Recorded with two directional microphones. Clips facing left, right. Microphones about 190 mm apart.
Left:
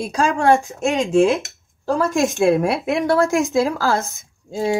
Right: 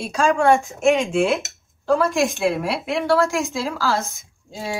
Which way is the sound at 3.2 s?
15° left (ahead or behind).